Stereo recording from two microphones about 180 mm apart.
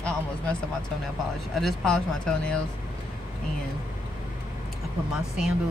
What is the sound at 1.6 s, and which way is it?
Speech, centre (ahead or behind).